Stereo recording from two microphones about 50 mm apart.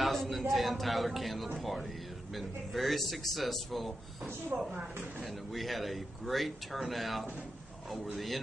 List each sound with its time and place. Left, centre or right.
0.0 s a man's voice: centre
4.5 s speech: right
5.2 s speech: centre